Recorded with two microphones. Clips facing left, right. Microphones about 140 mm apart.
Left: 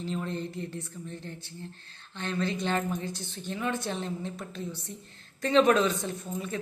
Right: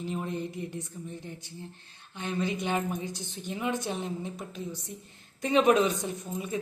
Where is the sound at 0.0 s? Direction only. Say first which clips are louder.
Even; 15° right (ahead or behind).